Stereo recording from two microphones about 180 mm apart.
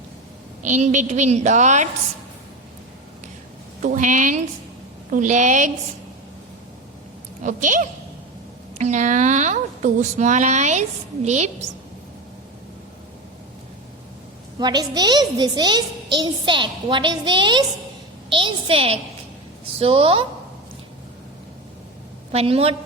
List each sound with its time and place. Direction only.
0.6 s a woman's voice: 40° right (ahead or behind)
3.8 s a woman's voice: 45° right (ahead or behind)
7.4 s a woman's voice: 45° right (ahead or behind)
14.6 s a child's voice: 20° right (ahead or behind)
22.3 s a woman's voice: 35° right (ahead or behind)